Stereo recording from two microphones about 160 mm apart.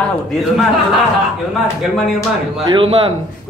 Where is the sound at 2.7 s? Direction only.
35° right (ahead or behind).